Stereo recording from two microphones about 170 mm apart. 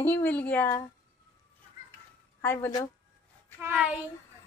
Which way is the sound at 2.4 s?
10° left (ahead or behind).